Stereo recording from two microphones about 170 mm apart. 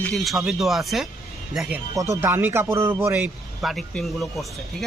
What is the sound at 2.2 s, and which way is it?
Speech, 15° right (ahead or behind).